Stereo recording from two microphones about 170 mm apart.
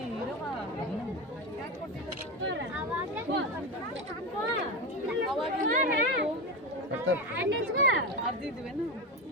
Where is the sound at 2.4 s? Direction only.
90° right.